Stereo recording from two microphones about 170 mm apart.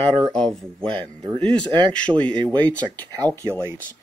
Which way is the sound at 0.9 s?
30° right (ahead or behind).